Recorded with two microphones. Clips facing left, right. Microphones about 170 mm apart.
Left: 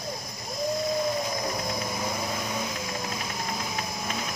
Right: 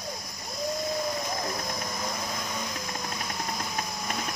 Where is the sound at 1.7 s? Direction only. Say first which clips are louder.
Left 3 dB; 10° left (ahead or behind).